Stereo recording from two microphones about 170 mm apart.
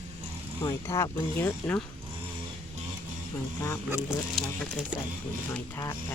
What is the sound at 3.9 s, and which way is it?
Speech, 5° right (ahead or behind).